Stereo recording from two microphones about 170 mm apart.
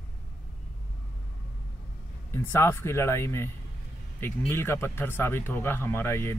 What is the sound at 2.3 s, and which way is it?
Speech, 15° left (ahead or behind).